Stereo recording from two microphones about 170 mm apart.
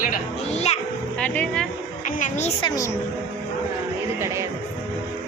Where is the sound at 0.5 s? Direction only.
40° left (ahead or behind).